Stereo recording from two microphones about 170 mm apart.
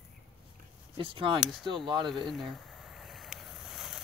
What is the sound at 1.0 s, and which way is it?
Speech, 30° right (ahead or behind).